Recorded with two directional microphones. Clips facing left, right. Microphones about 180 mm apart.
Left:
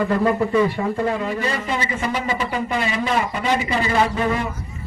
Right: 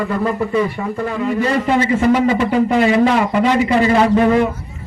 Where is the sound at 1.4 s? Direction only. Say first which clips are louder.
Right 8 dB; 55° right (ahead or behind).